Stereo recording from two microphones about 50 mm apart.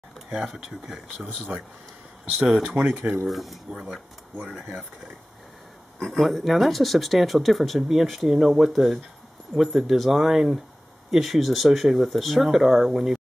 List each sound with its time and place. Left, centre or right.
0.3 s speech: centre
1.5 s speech: right
2.8 s speech: centre
4.5 s speech: centre
5.9 s speech: centre